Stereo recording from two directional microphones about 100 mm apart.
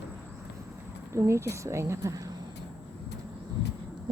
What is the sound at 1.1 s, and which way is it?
A woman's voice, 30° right (ahead or behind).